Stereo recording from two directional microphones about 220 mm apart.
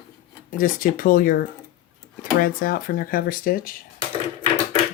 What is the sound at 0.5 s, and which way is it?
Speech, 40° left (ahead or behind).